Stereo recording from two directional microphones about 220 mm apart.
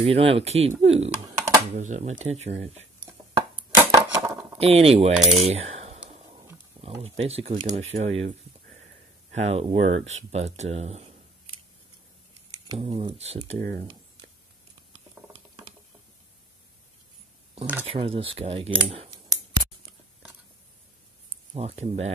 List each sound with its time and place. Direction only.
0.0 s speech: 25° right (ahead or behind)
3.1 s dishes: 15° right (ahead or behind)
4.6 s speech: 25° right (ahead or behind)
6.0 s a sound: 30° right (ahead or behind)
6.8 s speech: 30° right (ahead or behind)
9.3 s speech: 30° right (ahead or behind)
12.4 s a sound: 15° right (ahead or behind)
12.8 s speech: 25° right (ahead or behind)
15.2 s boiling: 10° right (ahead or behind)
17.8 s speech: 25° right (ahead or behind)
21.5 s speech: 30° right (ahead or behind)